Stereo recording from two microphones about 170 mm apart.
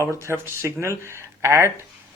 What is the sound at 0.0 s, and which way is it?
Speech, 15° right (ahead or behind).